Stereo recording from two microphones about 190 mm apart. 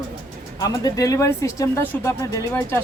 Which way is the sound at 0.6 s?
20° left (ahead or behind).